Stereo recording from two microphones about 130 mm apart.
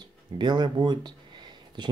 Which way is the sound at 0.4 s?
35° right (ahead or behind).